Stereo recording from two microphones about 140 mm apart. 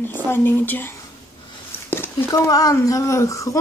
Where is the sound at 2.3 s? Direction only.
25° left (ahead or behind).